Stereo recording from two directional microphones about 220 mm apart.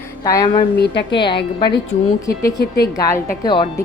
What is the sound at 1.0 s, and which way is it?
Speech, 20° left (ahead or behind).